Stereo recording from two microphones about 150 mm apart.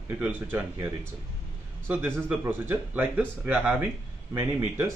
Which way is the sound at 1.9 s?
15° right (ahead or behind).